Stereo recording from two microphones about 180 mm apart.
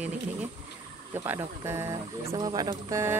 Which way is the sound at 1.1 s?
15° right (ahead or behind).